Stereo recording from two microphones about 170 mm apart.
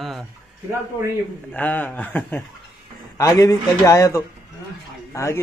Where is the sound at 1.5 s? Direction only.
10° left (ahead or behind).